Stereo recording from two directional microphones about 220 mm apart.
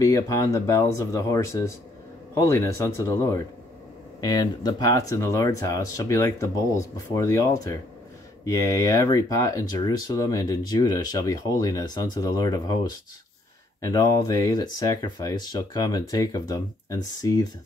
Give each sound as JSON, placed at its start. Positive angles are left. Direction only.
{"t": 0.0, "sound": "speech", "side_deg": 15}
{"t": 8.5, "sound": "speech", "side_deg": 15}
{"t": 13.7, "sound": "speech", "side_deg": 15}